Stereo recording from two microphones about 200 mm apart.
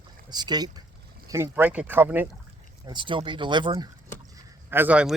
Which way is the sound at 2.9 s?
25° right (ahead or behind).